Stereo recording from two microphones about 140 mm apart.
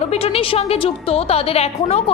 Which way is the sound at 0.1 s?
45° left (ahead or behind).